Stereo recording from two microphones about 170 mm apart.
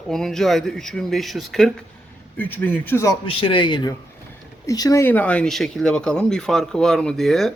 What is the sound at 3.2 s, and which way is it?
A man's voice, 30° left (ahead or behind).